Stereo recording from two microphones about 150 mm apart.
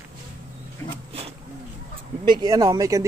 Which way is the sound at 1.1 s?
40° right (ahead or behind).